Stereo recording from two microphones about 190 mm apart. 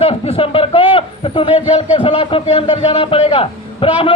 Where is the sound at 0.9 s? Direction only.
25° left (ahead or behind).